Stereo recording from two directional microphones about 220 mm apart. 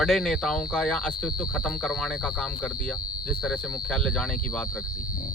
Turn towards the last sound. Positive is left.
turn(degrees=5)  # may be behind; listen again after turning